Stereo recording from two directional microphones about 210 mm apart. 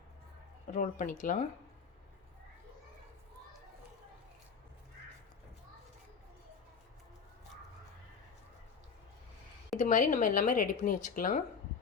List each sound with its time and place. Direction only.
0.7 s speech: 40° left (ahead or behind)
9.7 s speech: 35° left (ahead or behind)